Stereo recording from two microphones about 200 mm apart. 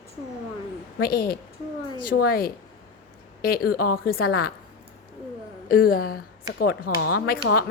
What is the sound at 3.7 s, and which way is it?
Speech, 45° left (ahead or behind).